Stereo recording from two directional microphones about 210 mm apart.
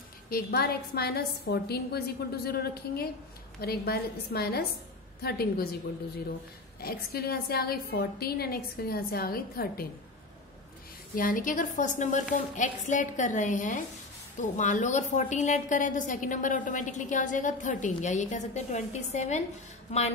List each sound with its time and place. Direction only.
0.3 s a woman's voice: 50° left (ahead or behind)
6.8 s a woman's voice: 45° left (ahead or behind)
11.1 s a woman's voice: 40° left (ahead or behind)